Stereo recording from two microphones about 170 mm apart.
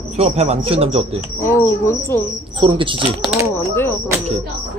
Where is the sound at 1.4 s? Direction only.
15° left (ahead or behind).